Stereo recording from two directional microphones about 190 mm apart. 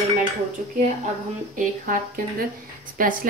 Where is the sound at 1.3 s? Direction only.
45° right (ahead or behind).